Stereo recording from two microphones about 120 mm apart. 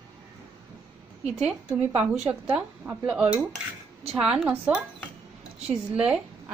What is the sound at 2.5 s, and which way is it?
A woman's voice, 10° right (ahead or behind).